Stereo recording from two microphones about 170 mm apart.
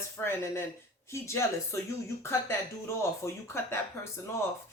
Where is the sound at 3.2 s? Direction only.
15° left (ahead or behind).